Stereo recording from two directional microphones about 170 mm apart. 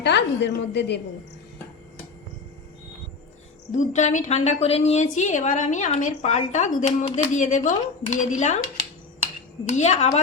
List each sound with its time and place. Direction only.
0.0 s a woman's voice: 85° left
3.7 s a woman's voice: 45° left (ahead or behind)